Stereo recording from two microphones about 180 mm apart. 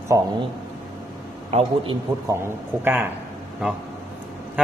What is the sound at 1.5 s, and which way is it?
Speech, 35° right (ahead or behind).